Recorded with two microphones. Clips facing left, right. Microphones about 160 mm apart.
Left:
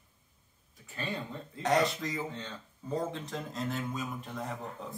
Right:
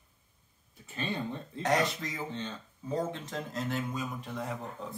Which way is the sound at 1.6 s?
Centre (ahead or behind).